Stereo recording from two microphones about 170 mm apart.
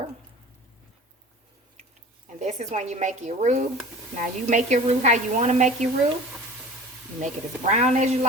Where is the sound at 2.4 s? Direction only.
45° right (ahead or behind).